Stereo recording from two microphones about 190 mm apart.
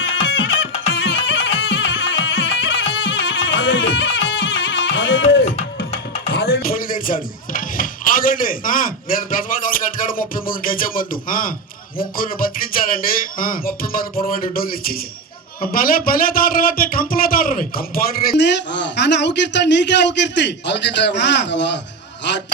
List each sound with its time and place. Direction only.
0.3 s music: 90° left
5.5 s music: 35° left (ahead or behind)
6.2 s speech: 55° left (ahead or behind)
11.9 s a sound: 50° left (ahead or behind)
15.6 s speech: 50° left (ahead or behind); by 22.4 s 65° left (ahead or behind)